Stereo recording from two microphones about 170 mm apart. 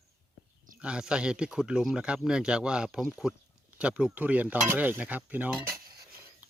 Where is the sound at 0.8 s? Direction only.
5° right (ahead or behind).